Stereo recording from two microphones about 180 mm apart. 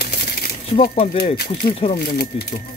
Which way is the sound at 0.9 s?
35° left (ahead or behind).